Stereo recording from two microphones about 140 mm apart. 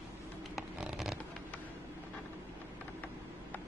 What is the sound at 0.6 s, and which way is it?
Vehicle, 5° right (ahead or behind).